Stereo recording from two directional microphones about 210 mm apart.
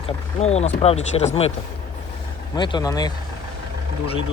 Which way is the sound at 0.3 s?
30° left (ahead or behind).